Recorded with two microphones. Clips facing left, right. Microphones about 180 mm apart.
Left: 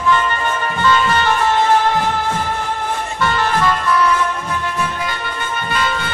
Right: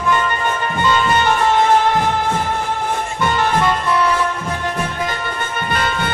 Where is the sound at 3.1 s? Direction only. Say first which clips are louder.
Even; 20° right (ahead or behind).